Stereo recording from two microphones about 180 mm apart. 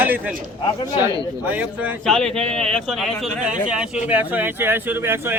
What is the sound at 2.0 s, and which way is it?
Speech, centre (ahead or behind).